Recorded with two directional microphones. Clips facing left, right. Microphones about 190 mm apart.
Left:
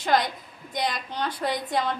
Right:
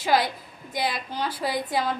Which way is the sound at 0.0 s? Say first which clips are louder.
Right 1 dB; 5° right (ahead or behind).